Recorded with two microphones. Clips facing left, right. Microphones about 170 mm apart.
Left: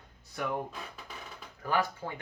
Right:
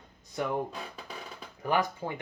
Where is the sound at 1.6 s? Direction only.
20° right (ahead or behind).